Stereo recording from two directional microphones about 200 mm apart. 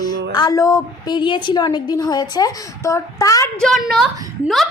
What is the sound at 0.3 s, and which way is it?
A woman's voice, 20° left (ahead or behind).